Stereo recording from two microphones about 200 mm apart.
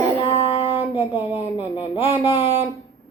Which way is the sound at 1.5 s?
25° left (ahead or behind).